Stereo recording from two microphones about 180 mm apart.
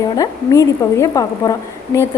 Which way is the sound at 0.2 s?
20° left (ahead or behind).